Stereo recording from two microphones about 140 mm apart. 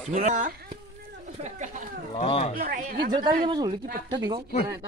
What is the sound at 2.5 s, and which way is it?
Speech, 80° right.